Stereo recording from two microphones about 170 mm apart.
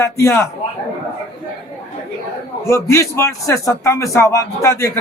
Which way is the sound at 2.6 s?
15° left (ahead or behind).